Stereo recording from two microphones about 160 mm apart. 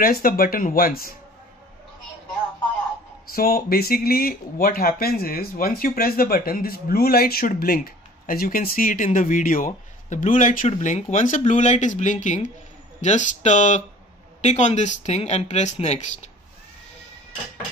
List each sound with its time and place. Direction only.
0.0 s speech: 65° left (ahead or behind)
3.3 s speech: 70° left (ahead or behind); by 16.3 s 45° left (ahead or behind)